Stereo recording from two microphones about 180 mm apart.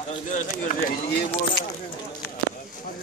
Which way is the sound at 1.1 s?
60° left (ahead or behind).